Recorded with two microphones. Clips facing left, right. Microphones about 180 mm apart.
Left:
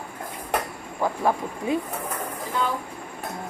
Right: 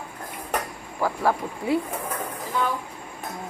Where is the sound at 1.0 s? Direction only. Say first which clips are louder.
Even; 20° left (ahead or behind).